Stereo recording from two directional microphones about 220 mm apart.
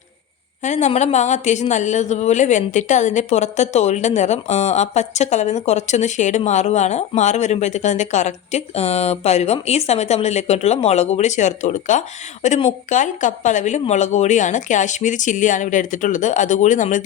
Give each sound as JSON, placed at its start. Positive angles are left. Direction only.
{"t": 0.6, "sound": "a woman's voice", "side_deg": 30}